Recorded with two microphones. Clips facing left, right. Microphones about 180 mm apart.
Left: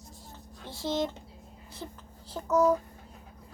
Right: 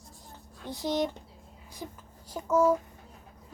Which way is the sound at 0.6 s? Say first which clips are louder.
Right 1 dB; 15° right (ahead or behind).